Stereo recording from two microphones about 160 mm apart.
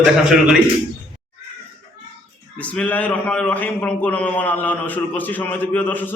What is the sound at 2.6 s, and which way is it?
A man's voice, 10° left (ahead or behind).